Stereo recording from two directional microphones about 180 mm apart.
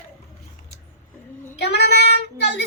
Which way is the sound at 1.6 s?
65° left (ahead or behind).